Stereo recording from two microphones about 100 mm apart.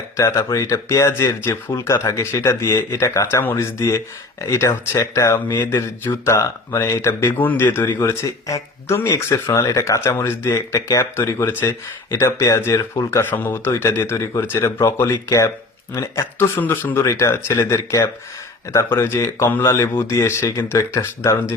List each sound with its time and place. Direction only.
0.2 s speech: 30° left (ahead or behind)
5.3 s speech: 40° left (ahead or behind)
6.2 s speech: 30° left (ahead or behind)
16.6 s speech: 20° left (ahead or behind)